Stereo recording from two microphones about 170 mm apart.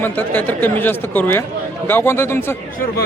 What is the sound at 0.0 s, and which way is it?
Speech, 10° left (ahead or behind).